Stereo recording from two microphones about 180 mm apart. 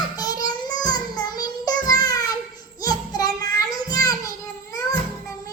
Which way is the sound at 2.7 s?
20° left (ahead or behind).